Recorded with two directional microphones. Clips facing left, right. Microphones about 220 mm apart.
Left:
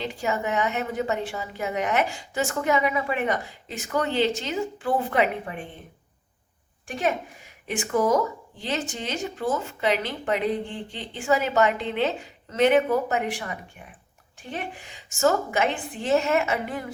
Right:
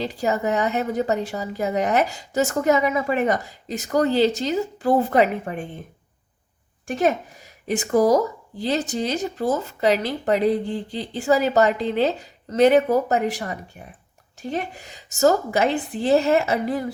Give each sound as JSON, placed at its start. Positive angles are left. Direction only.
{"t": 0.0, "sound": "a woman's voice", "side_deg": -40}
{"t": 6.8, "sound": "a woman's voice", "side_deg": -40}